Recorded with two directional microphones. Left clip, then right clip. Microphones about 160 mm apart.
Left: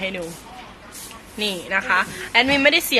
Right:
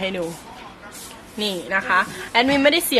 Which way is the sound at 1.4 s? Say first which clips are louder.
Even; 25° right (ahead or behind).